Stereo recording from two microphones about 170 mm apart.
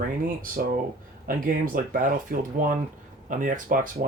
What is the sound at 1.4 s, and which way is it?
Speech, 55° right (ahead or behind).